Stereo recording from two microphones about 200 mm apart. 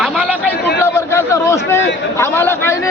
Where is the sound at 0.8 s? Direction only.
15° left (ahead or behind).